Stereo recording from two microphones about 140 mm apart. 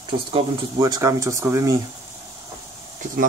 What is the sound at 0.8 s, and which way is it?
Speech, 25° right (ahead or behind).